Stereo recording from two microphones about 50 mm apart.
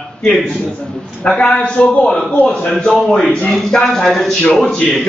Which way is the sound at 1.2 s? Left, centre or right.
Left.